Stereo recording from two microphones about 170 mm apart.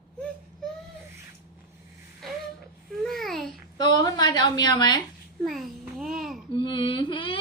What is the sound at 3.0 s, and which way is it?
Babbling, centre (ahead or behind).